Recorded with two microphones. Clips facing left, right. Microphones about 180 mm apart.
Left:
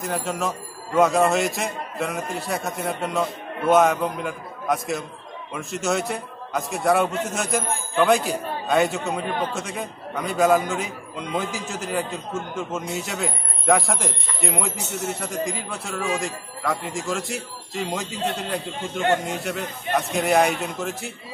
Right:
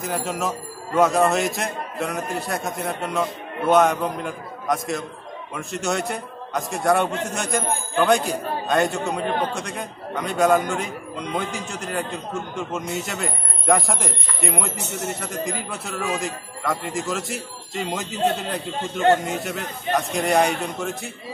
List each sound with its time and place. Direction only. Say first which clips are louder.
0.0 s a man's voice: even; centre (ahead or behind)